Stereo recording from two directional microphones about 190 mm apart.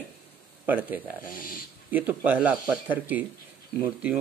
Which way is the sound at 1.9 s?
10° right (ahead or behind).